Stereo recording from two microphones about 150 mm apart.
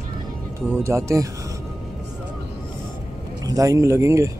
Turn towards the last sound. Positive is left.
turn(degrees=-20)  # may be behind; listen again after turning